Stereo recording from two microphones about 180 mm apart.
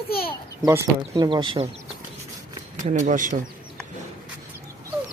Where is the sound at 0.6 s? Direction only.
20° right (ahead or behind).